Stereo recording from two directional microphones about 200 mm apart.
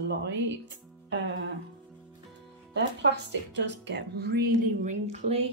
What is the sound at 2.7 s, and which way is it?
Speech, 60° right (ahead or behind).